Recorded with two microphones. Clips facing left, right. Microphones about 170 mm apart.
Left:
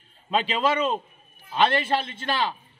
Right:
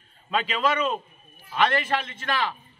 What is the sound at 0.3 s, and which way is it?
A man's voice, 25° left (ahead or behind).